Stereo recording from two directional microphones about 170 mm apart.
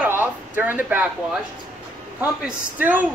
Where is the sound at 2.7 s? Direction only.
10° right (ahead or behind).